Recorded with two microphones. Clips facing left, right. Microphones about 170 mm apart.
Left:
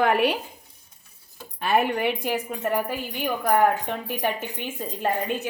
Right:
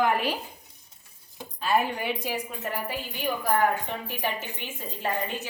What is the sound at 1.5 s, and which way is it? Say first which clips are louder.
Speech: left 3 dB; 65° left (ahead or behind).